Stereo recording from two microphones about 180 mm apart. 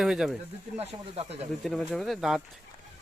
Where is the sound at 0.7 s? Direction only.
35° right (ahead or behind).